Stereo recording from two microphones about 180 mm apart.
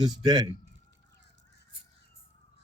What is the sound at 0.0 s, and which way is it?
Speech, 25° right (ahead or behind).